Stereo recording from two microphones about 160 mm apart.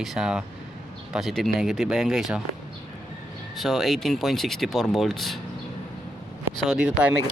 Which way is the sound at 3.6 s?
Centre (ahead or behind).